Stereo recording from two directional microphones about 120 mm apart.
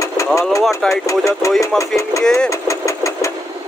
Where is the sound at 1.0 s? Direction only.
25° left (ahead or behind).